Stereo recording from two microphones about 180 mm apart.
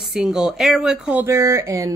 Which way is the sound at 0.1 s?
5° right (ahead or behind).